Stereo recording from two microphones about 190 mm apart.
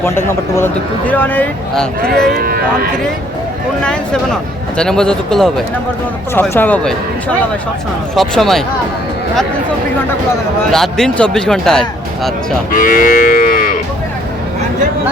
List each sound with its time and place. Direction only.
0.0 s a man's voice: 15° left (ahead or behind)
2.3 s speech: 50° right (ahead or behind)
3.8 s a man's voice: 5° left (ahead or behind)
8.1 s speech: centre (ahead or behind)
10.7 s speech: centre (ahead or behind)
12.7 s cattle: 45° left (ahead or behind)